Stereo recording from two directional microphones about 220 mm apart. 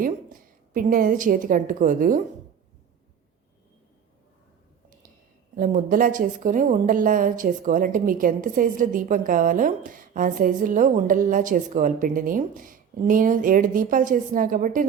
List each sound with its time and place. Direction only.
0.7 s a woman's voice: 40° right (ahead or behind)
5.5 s a woman's voice: 40° right (ahead or behind)